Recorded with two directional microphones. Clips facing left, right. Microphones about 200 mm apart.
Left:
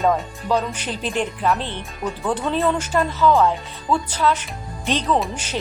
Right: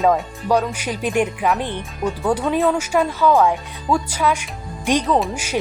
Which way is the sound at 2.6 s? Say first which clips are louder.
Right 2 dB; 5° right (ahead or behind).